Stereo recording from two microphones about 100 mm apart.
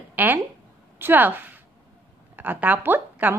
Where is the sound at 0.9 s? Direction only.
20° right (ahead or behind).